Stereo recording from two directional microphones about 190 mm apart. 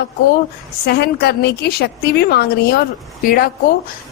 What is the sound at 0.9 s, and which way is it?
A woman's voice, 60° left (ahead or behind).